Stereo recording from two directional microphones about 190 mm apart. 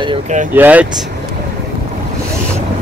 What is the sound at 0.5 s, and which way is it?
Speech, 10° right (ahead or behind).